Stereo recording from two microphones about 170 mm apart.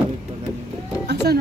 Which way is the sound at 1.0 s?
80° right.